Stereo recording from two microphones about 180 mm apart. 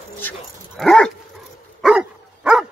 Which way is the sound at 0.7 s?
Centre (ahead or behind).